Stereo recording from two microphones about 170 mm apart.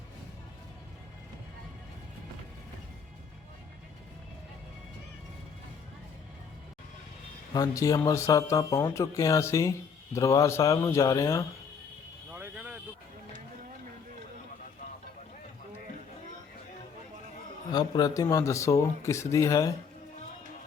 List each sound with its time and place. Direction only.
7.5 s speech: 20° left (ahead or behind)
12.3 s vehicle: 5° right (ahead or behind)
17.7 s speech: 25° left (ahead or behind)